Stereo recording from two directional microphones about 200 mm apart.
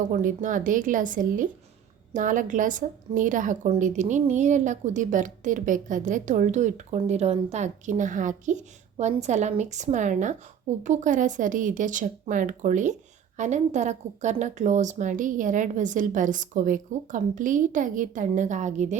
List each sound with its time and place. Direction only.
0.0 s a woman's voice: 40° right (ahead or behind)